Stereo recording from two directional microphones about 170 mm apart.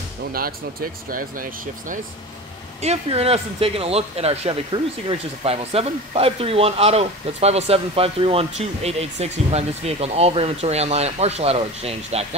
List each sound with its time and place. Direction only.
0.3 s speech: 60° right (ahead or behind)
2.8 s speech: 40° right (ahead or behind)